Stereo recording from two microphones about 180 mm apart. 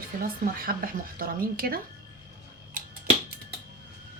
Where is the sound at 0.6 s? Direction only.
55° right (ahead or behind).